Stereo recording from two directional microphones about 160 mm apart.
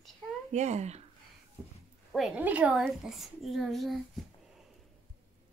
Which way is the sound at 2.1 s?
5° right (ahead or behind).